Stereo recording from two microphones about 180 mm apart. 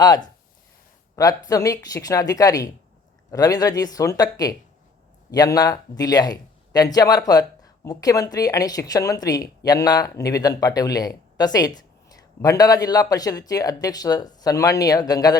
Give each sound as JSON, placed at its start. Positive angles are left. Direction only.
{"t": 0.0, "sound": "speech", "side_deg": 20}